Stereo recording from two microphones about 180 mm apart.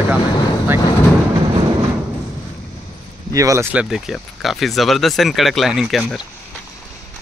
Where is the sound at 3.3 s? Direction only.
20° right (ahead or behind).